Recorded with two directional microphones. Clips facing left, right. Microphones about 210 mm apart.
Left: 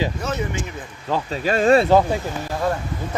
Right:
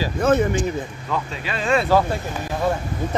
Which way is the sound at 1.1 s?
40° left (ahead or behind).